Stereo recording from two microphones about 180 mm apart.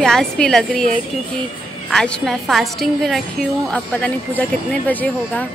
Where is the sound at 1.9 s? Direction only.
5° left (ahead or behind).